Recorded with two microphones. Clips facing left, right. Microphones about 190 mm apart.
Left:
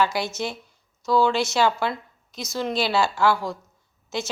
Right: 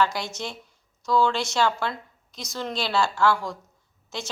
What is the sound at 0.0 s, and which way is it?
A woman's voice, 5° left (ahead or behind).